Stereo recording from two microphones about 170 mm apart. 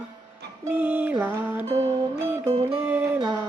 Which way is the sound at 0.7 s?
10° right (ahead or behind).